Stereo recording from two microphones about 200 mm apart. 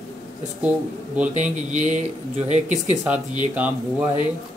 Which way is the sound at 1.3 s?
35° right (ahead or behind).